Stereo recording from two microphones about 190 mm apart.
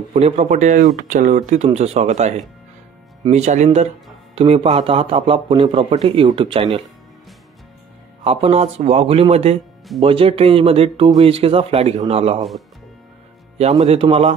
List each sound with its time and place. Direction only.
0.1 s a man's voice: 35° right (ahead or behind)
8.2 s a man's voice: 30° right (ahead or behind)
13.6 s speech: 35° right (ahead or behind)